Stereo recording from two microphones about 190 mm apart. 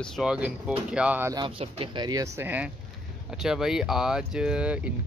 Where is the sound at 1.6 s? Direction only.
25° right (ahead or behind).